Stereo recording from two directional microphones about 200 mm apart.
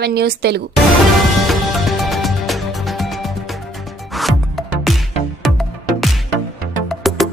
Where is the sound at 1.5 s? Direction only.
Centre (ahead or behind).